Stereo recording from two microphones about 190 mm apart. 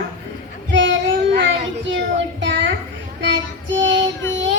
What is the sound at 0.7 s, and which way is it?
Child singing, 75° right (ahead or behind).